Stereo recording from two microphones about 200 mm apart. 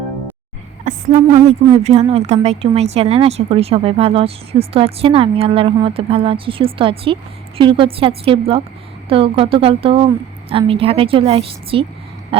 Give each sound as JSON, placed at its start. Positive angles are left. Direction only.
{"t": 0.9, "sound": "a woman's voice", "side_deg": -40}